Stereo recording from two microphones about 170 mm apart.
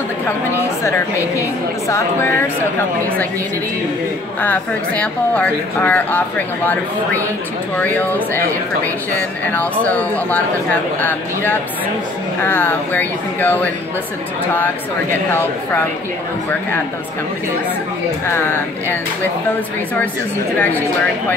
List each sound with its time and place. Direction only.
0.8 s speech: 15° left (ahead or behind)
4.4 s speech: 10° left (ahead or behind)
9.5 s speech: 10° left (ahead or behind)
18.3 s speech: 15° left (ahead or behind)
20.5 s speech: 10° left (ahead or behind)